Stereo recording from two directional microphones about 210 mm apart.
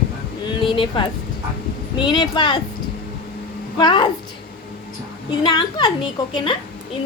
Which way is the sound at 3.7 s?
20° left (ahead or behind).